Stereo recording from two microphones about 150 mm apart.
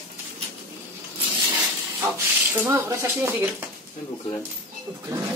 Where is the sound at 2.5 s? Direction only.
15° right (ahead or behind).